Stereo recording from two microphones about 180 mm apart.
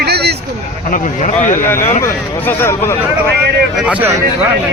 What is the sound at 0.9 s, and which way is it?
Speech, 45° left (ahead or behind).